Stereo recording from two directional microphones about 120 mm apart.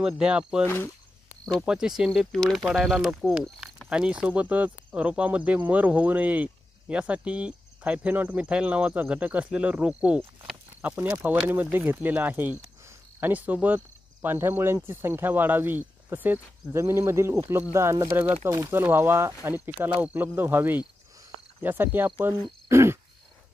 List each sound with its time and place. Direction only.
0.0 s speech: 5° right (ahead or behind)
1.7 s speech: 5° right (ahead or behind)
22.7 s a sound: 20° right (ahead or behind)